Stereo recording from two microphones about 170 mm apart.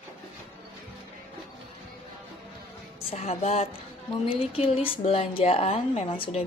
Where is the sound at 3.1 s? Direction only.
35° left (ahead or behind).